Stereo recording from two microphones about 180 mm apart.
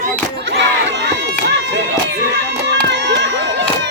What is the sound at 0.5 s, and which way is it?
Crowd, 75° right (ahead or behind).